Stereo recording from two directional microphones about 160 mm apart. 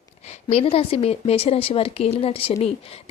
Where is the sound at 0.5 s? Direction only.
35° left (ahead or behind).